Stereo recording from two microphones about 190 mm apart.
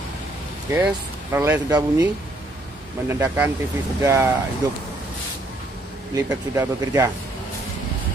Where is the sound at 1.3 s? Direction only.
15° right (ahead or behind).